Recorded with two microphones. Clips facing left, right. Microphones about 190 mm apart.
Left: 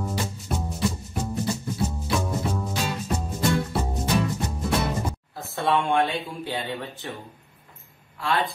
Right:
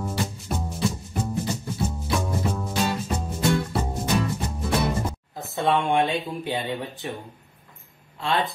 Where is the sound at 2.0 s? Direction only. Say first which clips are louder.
Even; centre (ahead or behind).